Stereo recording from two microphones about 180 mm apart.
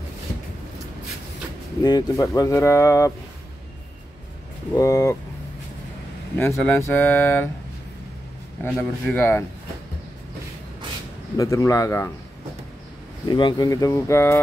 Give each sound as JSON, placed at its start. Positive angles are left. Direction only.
{"t": 1.8, "sound": "speech", "side_deg": 20}
{"t": 4.7, "sound": "speech", "side_deg": 15}
{"t": 6.3, "sound": "speech", "side_deg": 10}
{"t": 8.6, "sound": "speech", "side_deg": 10}
{"t": 11.3, "sound": "speech", "side_deg": 15}
{"t": 13.3, "sound": "speech", "side_deg": 25}